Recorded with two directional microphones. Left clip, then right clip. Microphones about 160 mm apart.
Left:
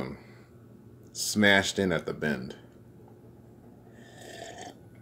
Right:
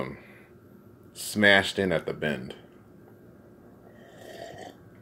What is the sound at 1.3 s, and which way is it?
Speech, 15° left (ahead or behind).